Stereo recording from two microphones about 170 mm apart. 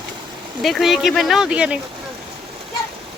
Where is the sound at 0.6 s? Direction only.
Centre (ahead or behind).